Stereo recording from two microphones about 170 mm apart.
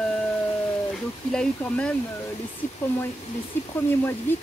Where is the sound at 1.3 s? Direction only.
5° left (ahead or behind).